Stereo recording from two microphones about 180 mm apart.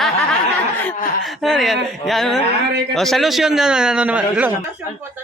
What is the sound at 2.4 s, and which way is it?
Speech, 70° right (ahead or behind).